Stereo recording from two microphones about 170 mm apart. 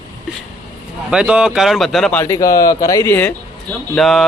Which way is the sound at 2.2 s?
20° left (ahead or behind).